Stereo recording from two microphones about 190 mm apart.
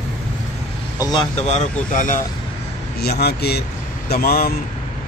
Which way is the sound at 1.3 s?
35° left (ahead or behind).